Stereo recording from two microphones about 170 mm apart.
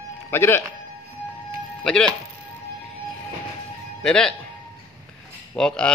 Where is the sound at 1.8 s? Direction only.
5° left (ahead or behind).